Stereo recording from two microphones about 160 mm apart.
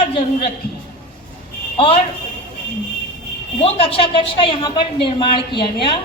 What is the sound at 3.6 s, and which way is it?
A woman's voice, 35° left (ahead or behind).